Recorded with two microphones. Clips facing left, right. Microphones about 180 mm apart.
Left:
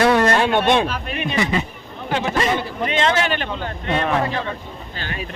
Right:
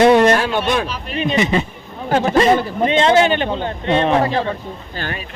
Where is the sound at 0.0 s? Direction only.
20° right (ahead or behind).